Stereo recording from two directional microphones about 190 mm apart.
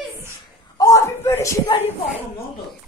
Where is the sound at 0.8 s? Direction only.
15° left (ahead or behind).